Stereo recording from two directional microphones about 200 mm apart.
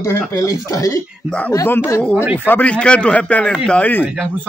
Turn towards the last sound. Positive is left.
turn(degrees=5)  # may be behind; listen again after turning